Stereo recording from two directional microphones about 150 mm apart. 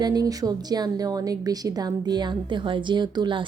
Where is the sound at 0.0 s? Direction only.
25° right (ahead or behind).